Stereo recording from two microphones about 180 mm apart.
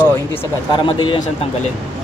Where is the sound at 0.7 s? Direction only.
25° left (ahead or behind).